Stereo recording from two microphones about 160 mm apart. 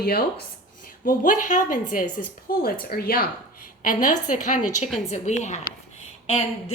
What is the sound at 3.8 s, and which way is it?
A woman's voice, 55° left (ahead or behind).